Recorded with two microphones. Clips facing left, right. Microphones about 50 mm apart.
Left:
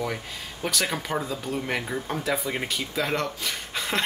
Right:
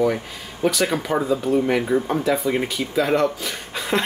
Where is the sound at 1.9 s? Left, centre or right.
Centre.